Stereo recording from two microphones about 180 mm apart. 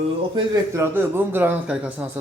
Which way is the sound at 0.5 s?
15° right (ahead or behind).